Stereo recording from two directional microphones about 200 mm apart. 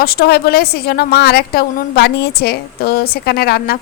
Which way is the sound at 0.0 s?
50° left (ahead or behind).